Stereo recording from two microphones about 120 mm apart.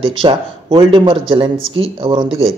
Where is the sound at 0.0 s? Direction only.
45° right (ahead or behind).